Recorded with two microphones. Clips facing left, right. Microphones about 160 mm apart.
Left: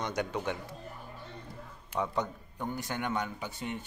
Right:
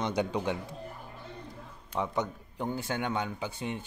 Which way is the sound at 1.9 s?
15° right (ahead or behind).